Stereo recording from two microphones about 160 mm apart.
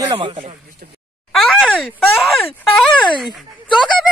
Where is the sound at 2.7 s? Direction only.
Centre (ahead or behind).